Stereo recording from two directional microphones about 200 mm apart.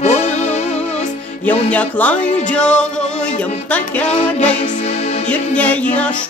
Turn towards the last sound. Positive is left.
turn(degrees=5)  # may be behind; listen again after turning